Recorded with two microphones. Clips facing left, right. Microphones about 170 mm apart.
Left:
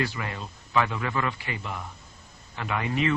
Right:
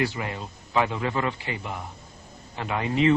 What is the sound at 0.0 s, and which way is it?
A man's voice, 20° right (ahead or behind).